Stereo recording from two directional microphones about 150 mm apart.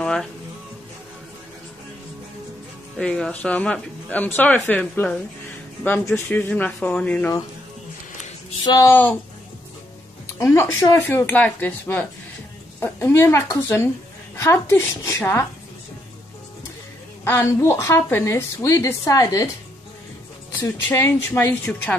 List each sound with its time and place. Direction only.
0.0 s speech: 5° left (ahead or behind)
3.0 s speech: 5° left (ahead or behind)
8.6 s speech: 25° left (ahead or behind)
10.4 s speech: 15° left (ahead or behind)
17.2 s speech: 20° left (ahead or behind)
20.5 s speech: 15° left (ahead or behind)